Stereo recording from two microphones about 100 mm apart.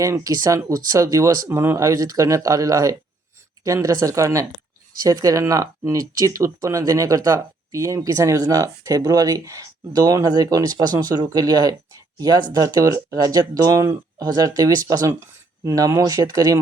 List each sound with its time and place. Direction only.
0.0 s speech: 35° right (ahead or behind)